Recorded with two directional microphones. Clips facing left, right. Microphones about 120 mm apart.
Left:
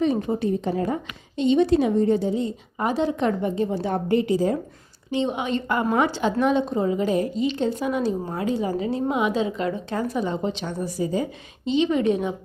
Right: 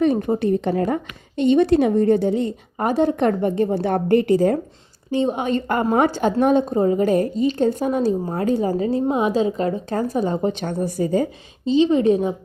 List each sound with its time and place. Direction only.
0.0 s speech: 55° right (ahead or behind)
5.1 s a woman's voice: 40° right (ahead or behind)
11.6 s a woman's voice: 35° right (ahead or behind)